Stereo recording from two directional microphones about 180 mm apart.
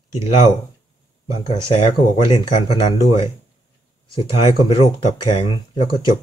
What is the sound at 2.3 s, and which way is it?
Speech, 25° left (ahead or behind).